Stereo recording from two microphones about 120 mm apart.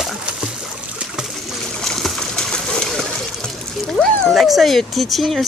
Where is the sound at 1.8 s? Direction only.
5° left (ahead or behind).